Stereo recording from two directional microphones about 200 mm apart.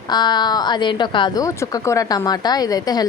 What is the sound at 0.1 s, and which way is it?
A woman's voice, 20° left (ahead or behind).